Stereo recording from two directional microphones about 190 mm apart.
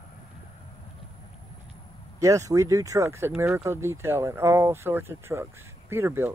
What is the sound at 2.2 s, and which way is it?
Speech, 15° right (ahead or behind).